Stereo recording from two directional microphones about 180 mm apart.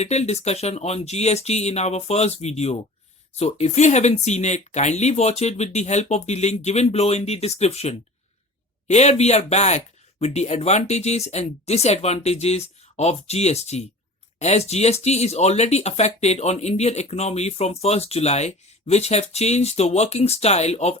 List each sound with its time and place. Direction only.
0.0 s speech: 40° left (ahead or behind)